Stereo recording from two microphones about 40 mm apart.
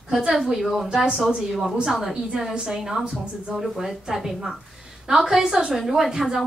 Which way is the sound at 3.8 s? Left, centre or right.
Centre.